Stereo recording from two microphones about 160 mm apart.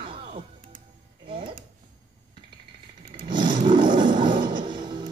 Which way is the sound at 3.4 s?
55° right (ahead or behind).